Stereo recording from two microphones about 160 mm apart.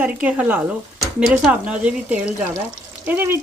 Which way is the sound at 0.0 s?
5° right (ahead or behind).